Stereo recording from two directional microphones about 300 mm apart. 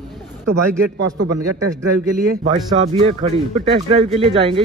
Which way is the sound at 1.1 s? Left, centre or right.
Right.